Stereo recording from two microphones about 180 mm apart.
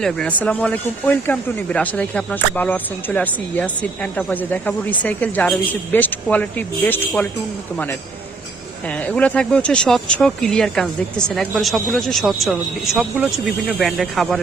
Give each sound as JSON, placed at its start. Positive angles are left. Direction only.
{"t": 0.0, "sound": "speech", "side_deg": 5}
{"t": 8.9, "sound": "speech", "side_deg": 5}